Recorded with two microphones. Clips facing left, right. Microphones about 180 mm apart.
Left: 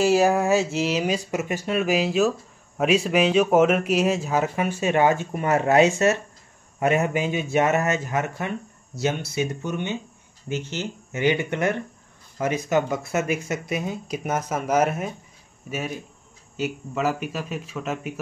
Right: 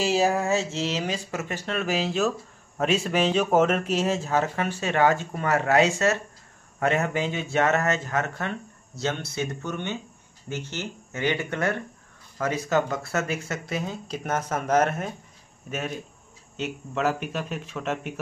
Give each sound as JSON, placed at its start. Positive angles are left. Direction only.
{"t": 0.3, "sound": "speech", "side_deg": 10}
{"t": 16.5, "sound": "speech", "side_deg": 5}